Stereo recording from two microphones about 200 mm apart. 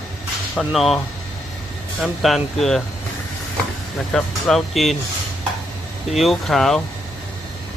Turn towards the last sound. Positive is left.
turn(degrees=0)  # may be behind; listen again after turning